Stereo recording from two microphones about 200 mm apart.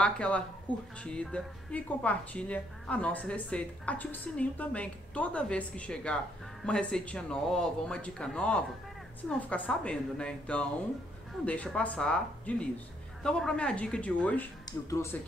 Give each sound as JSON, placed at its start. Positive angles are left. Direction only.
{"t": 0.0, "sound": "speech", "side_deg": 5}
{"t": 0.7, "sound": "speech", "side_deg": -25}
{"t": 1.0, "sound": "a woman's voice", "side_deg": 5}